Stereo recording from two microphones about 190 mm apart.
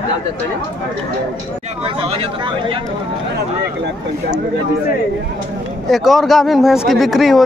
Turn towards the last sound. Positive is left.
turn(degrees=0)  # may be behind; listen again after turning